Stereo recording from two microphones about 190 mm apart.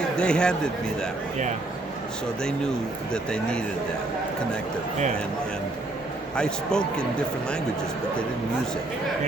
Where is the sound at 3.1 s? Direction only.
5° left (ahead or behind).